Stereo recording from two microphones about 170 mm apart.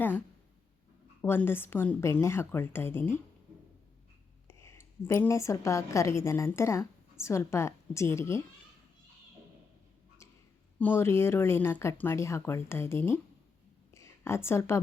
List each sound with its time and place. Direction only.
1.2 s speech: 15° left (ahead or behind)
4.4 s a woman's voice: 15° left (ahead or behind)
10.8 s speech: 10° left (ahead or behind)
13.9 s a sound: 15° left (ahead or behind)